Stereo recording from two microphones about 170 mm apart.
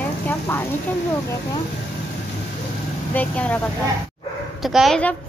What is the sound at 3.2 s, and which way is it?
A woman's voice, 10° left (ahead or behind).